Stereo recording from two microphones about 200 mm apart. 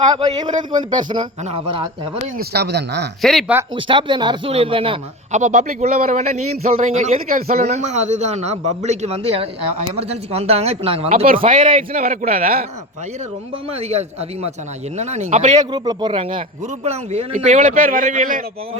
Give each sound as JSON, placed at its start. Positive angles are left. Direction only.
{"t": 0.0, "sound": "a man's voice", "side_deg": -20}
{"t": 2.4, "sound": "speech", "side_deg": -55}
{"t": 3.2, "sound": "speech", "side_deg": 0}
{"t": 3.8, "sound": "a man's voice", "side_deg": -25}
{"t": 11.1, "sound": "a man's voice", "side_deg": -45}
{"t": 13.7, "sound": "a man's voice", "side_deg": -30}
{"t": 15.7, "sound": "a man's voice", "side_deg": -20}